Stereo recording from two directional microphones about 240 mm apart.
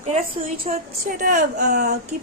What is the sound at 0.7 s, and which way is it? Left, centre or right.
A woman's voice, right.